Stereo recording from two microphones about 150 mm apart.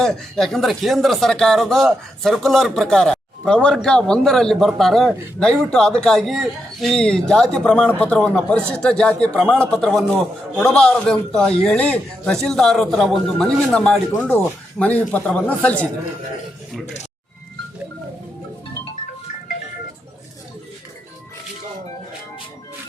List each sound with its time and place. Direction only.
0.0 s speech: 5° left (ahead or behind)
16.8 s speech: 50° left (ahead or behind)